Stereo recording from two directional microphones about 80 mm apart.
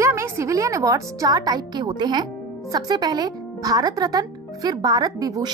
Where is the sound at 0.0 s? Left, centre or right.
Right.